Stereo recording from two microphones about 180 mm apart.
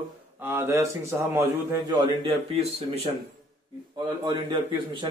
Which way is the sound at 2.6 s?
35° right (ahead or behind).